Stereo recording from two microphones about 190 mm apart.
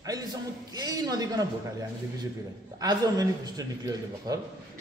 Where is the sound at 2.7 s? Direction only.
20° right (ahead or behind).